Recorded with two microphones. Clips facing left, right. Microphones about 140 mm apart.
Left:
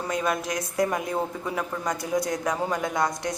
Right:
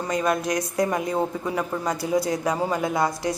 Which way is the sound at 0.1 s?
Centre (ahead or behind).